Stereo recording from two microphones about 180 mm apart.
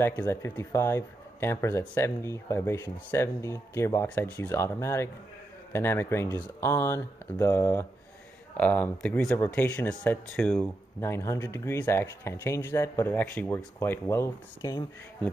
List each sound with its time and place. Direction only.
0.0 s speech: 15° left (ahead or behind)
11.0 s speech: 15° left (ahead or behind)